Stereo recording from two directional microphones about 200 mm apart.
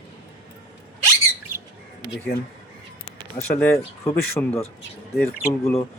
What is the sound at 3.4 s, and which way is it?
Speech, 30° left (ahead or behind).